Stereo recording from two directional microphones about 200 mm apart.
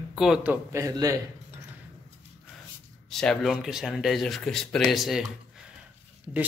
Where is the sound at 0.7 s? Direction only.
15° right (ahead or behind).